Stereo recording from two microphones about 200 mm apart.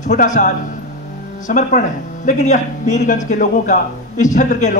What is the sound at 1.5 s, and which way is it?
A man's voice, 40° left (ahead or behind).